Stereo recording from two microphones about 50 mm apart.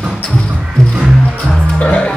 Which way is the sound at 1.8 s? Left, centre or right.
Left.